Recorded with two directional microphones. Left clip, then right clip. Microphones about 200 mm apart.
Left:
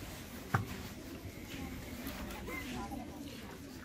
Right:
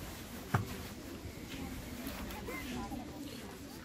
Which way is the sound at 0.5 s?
25° right (ahead or behind).